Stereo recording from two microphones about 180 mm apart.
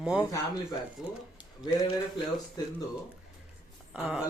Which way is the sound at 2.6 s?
20° left (ahead or behind).